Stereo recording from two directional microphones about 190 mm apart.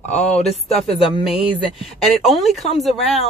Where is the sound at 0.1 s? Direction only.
35° left (ahead or behind).